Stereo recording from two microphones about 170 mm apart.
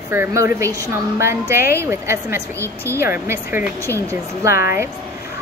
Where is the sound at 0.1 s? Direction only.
15° right (ahead or behind).